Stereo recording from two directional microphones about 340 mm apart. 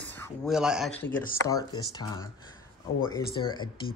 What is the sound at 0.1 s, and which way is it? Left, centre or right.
Speech, centre.